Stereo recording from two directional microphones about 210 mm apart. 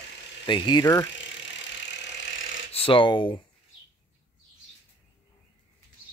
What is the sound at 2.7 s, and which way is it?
Speech, 25° left (ahead or behind).